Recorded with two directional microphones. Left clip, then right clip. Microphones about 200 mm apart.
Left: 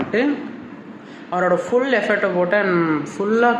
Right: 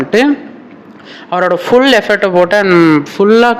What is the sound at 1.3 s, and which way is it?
Speech, 45° right (ahead or behind).